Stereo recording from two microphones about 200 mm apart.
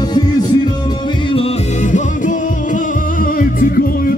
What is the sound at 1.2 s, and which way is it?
Music, 30° left (ahead or behind).